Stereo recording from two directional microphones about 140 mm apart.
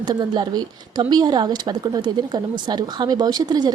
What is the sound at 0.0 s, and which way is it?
Speech, 30° right (ahead or behind).